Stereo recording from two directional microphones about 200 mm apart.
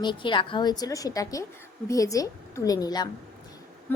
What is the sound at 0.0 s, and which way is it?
A woman's voice, 25° left (ahead or behind).